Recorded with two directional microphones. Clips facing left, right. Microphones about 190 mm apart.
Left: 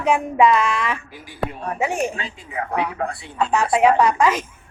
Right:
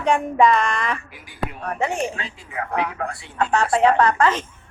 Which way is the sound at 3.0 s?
25° left (ahead or behind).